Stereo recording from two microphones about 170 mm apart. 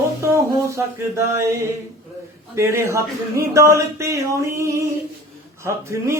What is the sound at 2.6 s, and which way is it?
Mantra, 15° right (ahead or behind).